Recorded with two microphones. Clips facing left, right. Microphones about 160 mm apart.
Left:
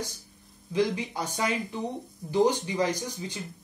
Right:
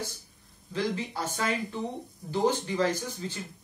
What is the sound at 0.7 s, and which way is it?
Speech, 15° left (ahead or behind).